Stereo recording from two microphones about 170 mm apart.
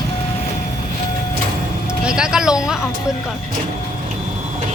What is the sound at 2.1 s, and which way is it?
Speech, 5° right (ahead or behind).